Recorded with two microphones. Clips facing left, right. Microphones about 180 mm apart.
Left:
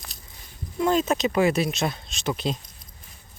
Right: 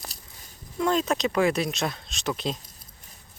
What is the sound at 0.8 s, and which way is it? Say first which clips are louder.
Speech: left 2 dB; 5° left (ahead or behind).